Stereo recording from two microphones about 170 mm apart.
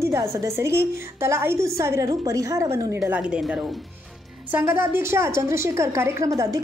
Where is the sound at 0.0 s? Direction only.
15° right (ahead or behind).